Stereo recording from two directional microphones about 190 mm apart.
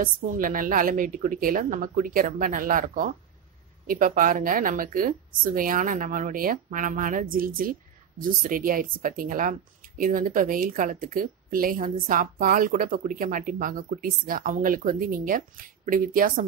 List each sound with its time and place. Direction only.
0.0 s speech: 45° right (ahead or behind)